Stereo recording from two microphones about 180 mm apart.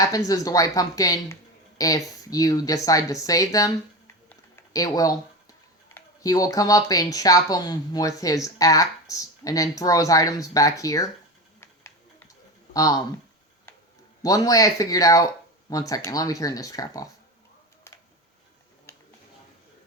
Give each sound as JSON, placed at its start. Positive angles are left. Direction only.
{"t": 0.3, "sound": "speech", "side_deg": 20}
{"t": 12.7, "sound": "speech", "side_deg": 20}
{"t": 14.2, "sound": "speech", "side_deg": 20}